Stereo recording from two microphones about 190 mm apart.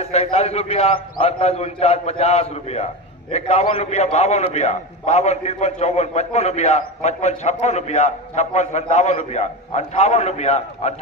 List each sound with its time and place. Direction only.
0.0 s a man's voice: 35° left (ahead or behind)